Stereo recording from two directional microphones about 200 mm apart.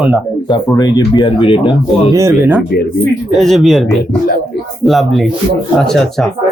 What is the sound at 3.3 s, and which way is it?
Speech, centre (ahead or behind).